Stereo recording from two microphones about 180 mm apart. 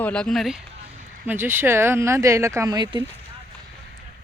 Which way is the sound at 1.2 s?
10° right (ahead or behind).